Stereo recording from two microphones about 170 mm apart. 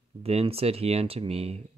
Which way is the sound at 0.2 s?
35° right (ahead or behind).